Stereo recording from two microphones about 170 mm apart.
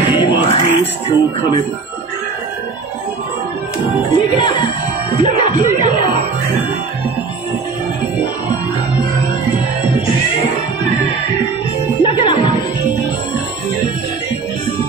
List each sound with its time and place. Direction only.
0.0 s music: 25° left (ahead or behind)
3.8 s speech: 30° left (ahead or behind)
5.2 s music: 30° left (ahead or behind)
12.0 s music: 30° left (ahead or behind)